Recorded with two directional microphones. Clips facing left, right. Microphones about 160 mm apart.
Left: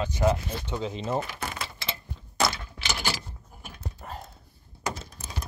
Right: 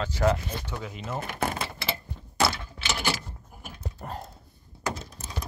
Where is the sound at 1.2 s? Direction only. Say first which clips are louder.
Right 6 dB; 50° right (ahead or behind).